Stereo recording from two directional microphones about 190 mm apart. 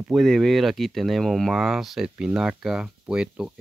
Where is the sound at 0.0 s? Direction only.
Centre (ahead or behind).